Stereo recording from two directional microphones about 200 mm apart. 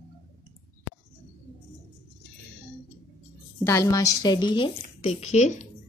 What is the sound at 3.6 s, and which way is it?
A woman's voice, 15° left (ahead or behind).